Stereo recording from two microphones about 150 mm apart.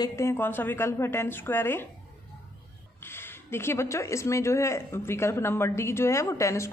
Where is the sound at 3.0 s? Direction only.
15° left (ahead or behind).